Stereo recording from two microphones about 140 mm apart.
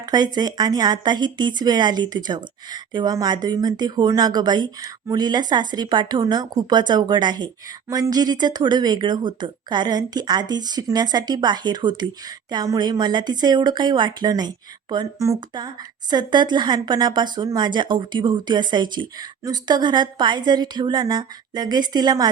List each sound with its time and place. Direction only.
0.0 s speech: 30° right (ahead or behind)